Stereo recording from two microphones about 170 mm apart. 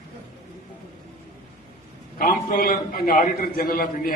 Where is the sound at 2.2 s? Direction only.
60° left (ahead or behind).